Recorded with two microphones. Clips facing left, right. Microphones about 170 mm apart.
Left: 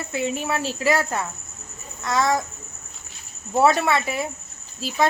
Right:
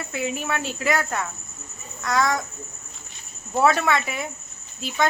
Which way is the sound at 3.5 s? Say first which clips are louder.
Left 2 dB; 15° left (ahead or behind).